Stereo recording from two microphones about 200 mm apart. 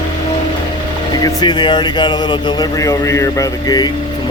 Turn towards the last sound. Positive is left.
turn(degrees=20)  # may be behind; listen again after turning